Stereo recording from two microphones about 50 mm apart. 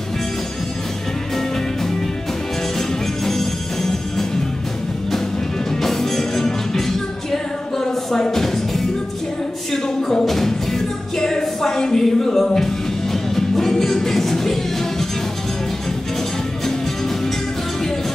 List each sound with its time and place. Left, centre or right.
3.3 s music: centre
5.8 s music: centre